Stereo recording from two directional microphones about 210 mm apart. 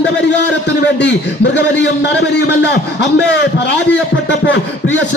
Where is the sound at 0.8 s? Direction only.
55° left (ahead or behind).